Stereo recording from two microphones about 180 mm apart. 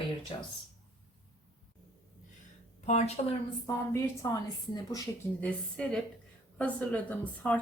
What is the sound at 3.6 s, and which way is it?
Speech, 15° left (ahead or behind).